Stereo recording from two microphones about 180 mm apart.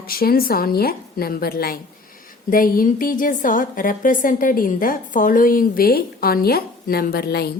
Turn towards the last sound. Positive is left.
turn(degrees=60)  # may be behind; listen again after turning